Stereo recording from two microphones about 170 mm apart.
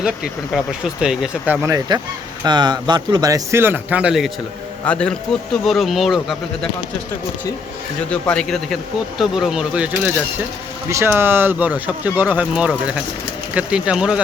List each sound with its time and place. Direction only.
1.0 s speech: 5° right (ahead or behind)
1.6 s speech: 20° right (ahead or behind)
4.9 s speech: 5° left (ahead or behind)
8.1 s speech: 5° left (ahead or behind)